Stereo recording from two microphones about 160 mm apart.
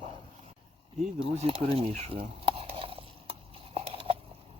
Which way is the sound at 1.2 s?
35° right (ahead or behind).